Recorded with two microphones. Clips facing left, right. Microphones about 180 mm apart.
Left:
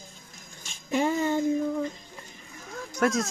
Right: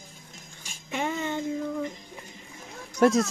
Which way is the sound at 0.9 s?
35° left (ahead or behind).